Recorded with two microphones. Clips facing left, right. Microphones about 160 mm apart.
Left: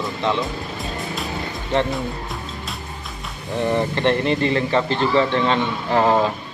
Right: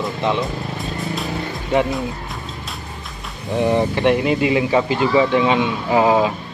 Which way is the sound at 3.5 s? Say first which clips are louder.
Right 3 dB; 20° right (ahead or behind).